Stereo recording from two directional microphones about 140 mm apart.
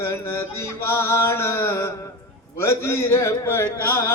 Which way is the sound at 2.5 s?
20° left (ahead or behind).